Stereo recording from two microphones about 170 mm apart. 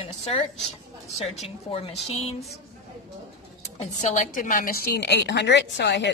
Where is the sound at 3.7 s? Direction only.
45° left (ahead or behind); by 6.0 s 90° left.